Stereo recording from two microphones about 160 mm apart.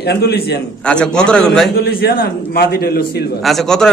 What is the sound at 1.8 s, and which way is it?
A man's voice, 75° left (ahead or behind).